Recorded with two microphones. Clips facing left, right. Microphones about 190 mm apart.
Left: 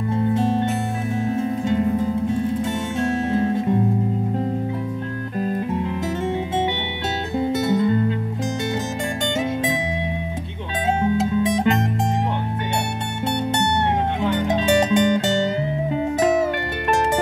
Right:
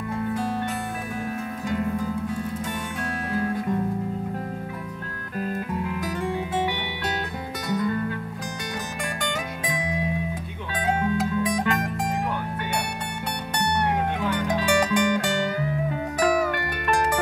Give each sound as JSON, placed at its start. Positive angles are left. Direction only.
{"t": 0.1, "sound": "music", "side_deg": 25}
{"t": 5.4, "sound": "music", "side_deg": 25}
{"t": 7.3, "sound": "music", "side_deg": 25}
{"t": 9.7, "sound": "music", "side_deg": 25}
{"t": 14.2, "sound": "music", "side_deg": 25}